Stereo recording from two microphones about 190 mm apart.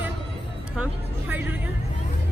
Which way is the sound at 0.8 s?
10° right (ahead or behind).